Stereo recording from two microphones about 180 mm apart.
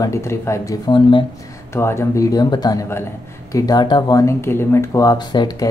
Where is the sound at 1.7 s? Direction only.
15° left (ahead or behind).